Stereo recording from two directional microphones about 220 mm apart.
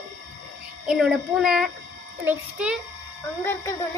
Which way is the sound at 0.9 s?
Centre (ahead or behind).